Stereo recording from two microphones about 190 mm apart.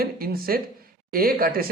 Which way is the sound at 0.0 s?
50° right (ahead or behind).